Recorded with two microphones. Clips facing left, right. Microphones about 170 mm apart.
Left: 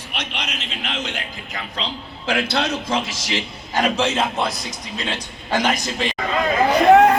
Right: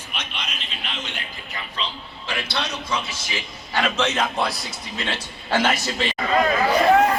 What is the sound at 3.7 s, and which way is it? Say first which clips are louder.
A man's voice: left 3 dB; 40° left (ahead or behind).